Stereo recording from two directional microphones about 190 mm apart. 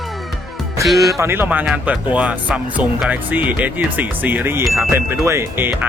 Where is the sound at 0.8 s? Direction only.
Centre (ahead or behind).